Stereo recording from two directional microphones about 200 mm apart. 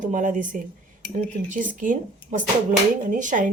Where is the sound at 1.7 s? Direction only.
40° right (ahead or behind).